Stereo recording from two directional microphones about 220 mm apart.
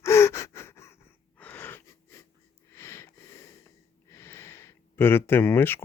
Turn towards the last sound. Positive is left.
turn(degrees=10)  # may be behind; listen again after turning